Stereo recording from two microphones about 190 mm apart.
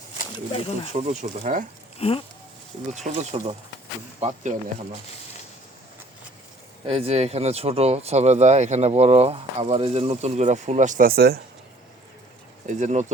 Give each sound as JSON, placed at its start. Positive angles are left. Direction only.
{"t": 0.3, "sound": "speech", "side_deg": 25}
{"t": 1.2, "sound": "speech", "side_deg": -45}
{"t": 2.0, "sound": "speech", "side_deg": 30}
{"t": 2.9, "sound": "speech", "side_deg": -35}
{"t": 6.8, "sound": "speech", "side_deg": -30}
{"t": 12.6, "sound": "speech", "side_deg": -40}